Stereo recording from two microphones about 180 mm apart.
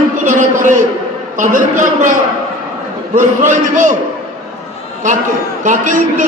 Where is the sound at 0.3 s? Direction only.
45° right (ahead or behind).